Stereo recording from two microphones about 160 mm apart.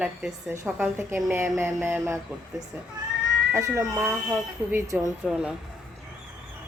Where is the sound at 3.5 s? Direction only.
20° right (ahead or behind).